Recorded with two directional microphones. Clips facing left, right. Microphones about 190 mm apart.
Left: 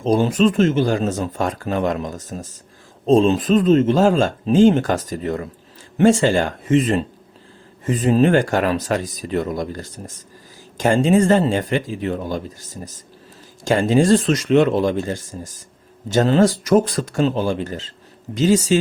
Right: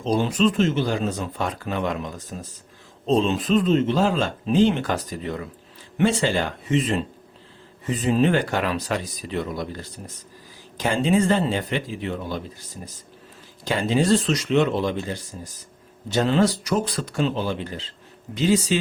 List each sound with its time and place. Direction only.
0.0 s speech: 50° left (ahead or behind)